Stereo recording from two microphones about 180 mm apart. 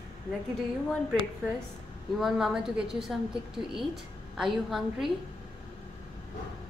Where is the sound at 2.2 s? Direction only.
Centre (ahead or behind).